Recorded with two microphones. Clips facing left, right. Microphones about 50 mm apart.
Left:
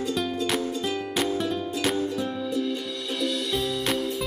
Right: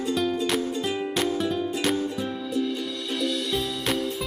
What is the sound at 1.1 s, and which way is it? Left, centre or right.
Music, centre.